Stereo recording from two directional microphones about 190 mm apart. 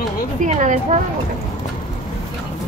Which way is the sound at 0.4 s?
40° right (ahead or behind).